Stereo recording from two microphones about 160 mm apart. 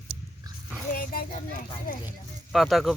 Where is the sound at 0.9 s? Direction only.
65° left (ahead or behind).